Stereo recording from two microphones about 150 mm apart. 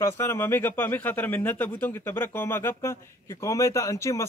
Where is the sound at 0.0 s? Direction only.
15° left (ahead or behind).